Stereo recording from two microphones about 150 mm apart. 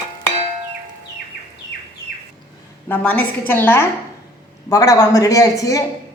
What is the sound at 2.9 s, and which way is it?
A woman's voice, 10° left (ahead or behind).